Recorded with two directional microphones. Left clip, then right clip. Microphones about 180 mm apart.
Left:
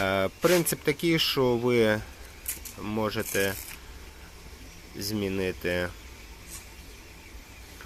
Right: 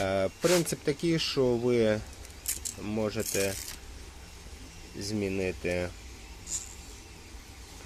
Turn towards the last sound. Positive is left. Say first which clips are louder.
# left 2 dB
turn(degrees=5)  # may be behind; listen again after turning